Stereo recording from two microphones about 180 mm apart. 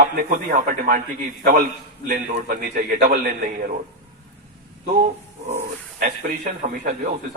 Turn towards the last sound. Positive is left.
turn(degrees=-50)  # may be behind; listen again after turning